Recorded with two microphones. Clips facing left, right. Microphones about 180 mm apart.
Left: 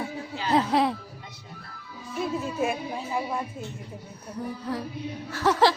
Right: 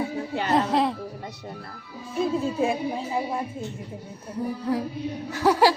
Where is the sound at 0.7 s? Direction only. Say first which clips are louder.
Even; centre (ahead or behind).